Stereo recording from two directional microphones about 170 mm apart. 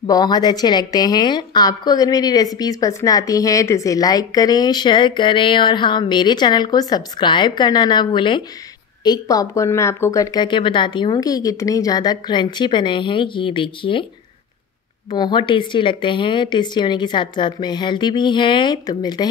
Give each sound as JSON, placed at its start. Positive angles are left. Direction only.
{"t": 0.0, "sound": "a woman's voice", "side_deg": 25}
{"t": 15.1, "sound": "a woman's voice", "side_deg": 25}